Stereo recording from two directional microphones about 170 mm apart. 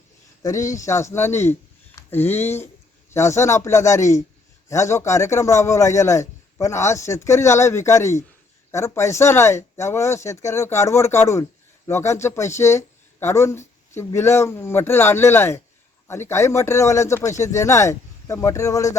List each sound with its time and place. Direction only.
0.4 s speech: 20° left (ahead or behind)